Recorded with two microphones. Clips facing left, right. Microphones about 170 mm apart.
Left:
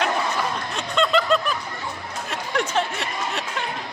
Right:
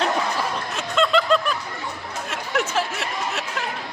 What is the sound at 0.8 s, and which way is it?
Snicker, centre (ahead or behind).